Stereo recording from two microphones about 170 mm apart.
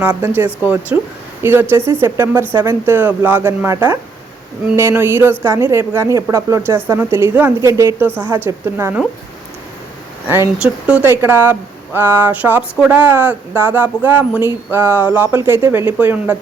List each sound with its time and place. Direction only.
0.1 s speech: 15° right (ahead or behind)
10.2 s speech: 15° right (ahead or behind)